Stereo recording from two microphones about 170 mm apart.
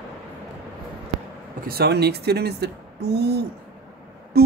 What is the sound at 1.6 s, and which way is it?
Speech, 70° right (ahead or behind).